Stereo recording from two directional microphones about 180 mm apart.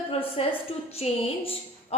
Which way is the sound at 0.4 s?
35° left (ahead or behind).